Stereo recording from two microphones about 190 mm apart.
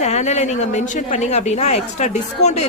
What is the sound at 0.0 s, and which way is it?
A woman's voice, 35° left (ahead or behind).